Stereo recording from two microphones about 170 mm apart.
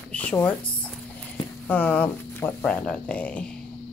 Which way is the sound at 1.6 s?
10° left (ahead or behind).